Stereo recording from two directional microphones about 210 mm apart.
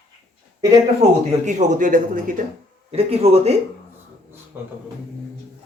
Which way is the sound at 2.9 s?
30° right (ahead or behind).